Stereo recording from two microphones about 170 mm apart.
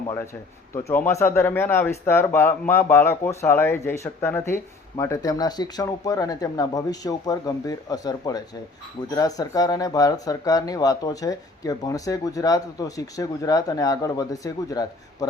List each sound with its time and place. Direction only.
0.7 s speech: 15° left (ahead or behind)